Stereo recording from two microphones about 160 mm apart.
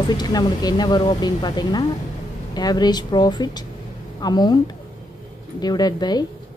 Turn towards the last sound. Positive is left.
turn(degrees=25)  # may be behind; listen again after turning